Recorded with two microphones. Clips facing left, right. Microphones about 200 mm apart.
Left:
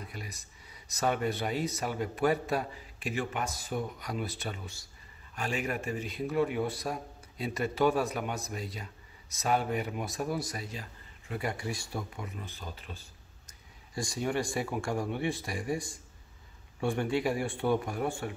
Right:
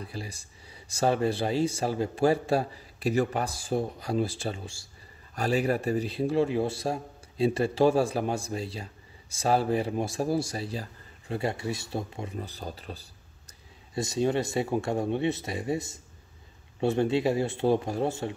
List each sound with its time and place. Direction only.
0.0 s speech: 30° right (ahead or behind)
13.9 s speech: 25° right (ahead or behind)